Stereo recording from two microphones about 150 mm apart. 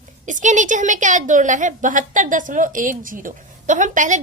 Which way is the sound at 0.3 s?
55° right (ahead or behind).